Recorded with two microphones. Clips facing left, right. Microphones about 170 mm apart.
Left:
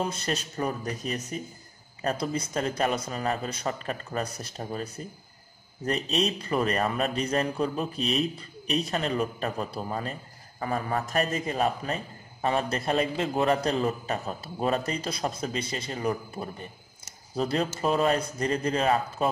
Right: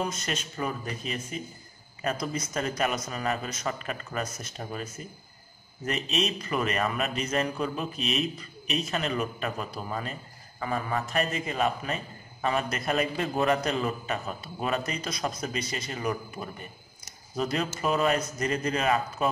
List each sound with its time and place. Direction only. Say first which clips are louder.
0.0 s a man's voice: left 2 dB; 30° left (ahead or behind)
2.0 s a man's voice: left 2 dB; 30° left (ahead or behind)